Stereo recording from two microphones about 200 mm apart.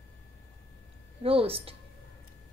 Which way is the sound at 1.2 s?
30° right (ahead or behind).